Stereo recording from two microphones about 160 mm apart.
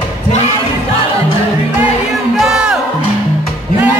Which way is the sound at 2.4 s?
5° right (ahead or behind).